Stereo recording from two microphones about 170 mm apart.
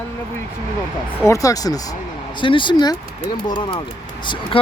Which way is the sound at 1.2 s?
20° left (ahead or behind).